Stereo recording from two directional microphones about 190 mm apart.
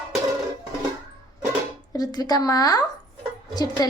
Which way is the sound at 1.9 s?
20° left (ahead or behind).